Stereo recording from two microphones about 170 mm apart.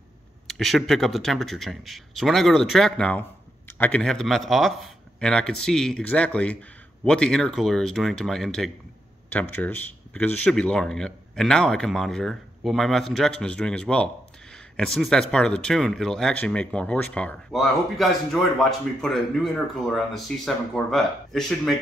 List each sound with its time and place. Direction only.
0.5 s speech: centre (ahead or behind)